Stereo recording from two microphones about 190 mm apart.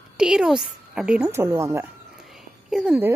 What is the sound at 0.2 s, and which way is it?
Speech, 5° right (ahead or behind).